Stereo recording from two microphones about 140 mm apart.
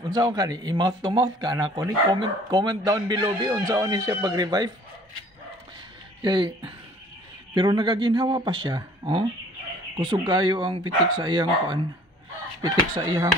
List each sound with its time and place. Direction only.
0.1 s speech: 30° right (ahead or behind)
6.2 s speech: 35° right (ahead or behind)
10.2 s speech: 30° right (ahead or behind)